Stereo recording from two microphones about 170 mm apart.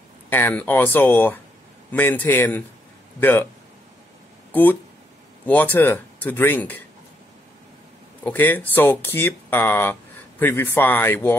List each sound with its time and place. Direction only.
0.3 s speech: 10° left (ahead or behind)
4.5 s speech: 10° left (ahead or behind)
8.2 s speech: 10° left (ahead or behind)